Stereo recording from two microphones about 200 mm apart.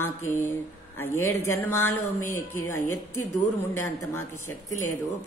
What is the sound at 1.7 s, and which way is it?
Speech, 90° left.